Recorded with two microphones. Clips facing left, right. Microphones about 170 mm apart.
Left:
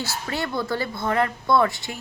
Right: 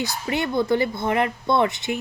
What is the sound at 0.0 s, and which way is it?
Speech, 20° right (ahead or behind).